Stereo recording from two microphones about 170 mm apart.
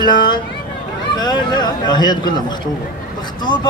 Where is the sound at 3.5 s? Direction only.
25° left (ahead or behind).